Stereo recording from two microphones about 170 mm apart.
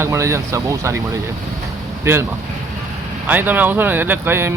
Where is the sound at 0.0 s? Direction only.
15° right (ahead or behind).